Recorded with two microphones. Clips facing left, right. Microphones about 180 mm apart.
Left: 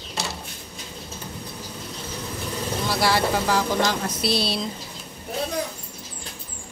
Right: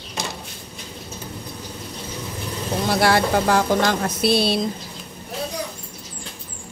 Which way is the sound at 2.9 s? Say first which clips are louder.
Right 4 dB; 55° right (ahead or behind).